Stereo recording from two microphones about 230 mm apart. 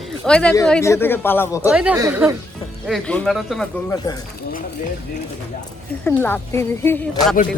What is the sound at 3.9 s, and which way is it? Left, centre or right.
Speech, centre.